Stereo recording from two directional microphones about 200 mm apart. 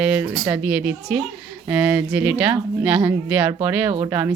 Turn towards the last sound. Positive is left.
turn(degrees=-10)  # may be behind; listen again after turning